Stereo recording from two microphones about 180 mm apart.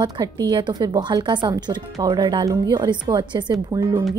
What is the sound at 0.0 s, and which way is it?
A woman's voice, 20° right (ahead or behind).